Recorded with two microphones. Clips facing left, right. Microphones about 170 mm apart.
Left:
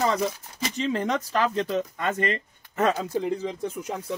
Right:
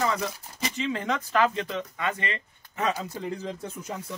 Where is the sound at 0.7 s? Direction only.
40° left (ahead or behind).